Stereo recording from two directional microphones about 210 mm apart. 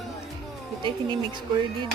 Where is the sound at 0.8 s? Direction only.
20° right (ahead or behind).